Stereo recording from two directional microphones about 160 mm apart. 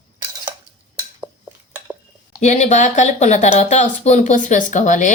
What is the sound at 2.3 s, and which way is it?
Speech, 50° left (ahead or behind).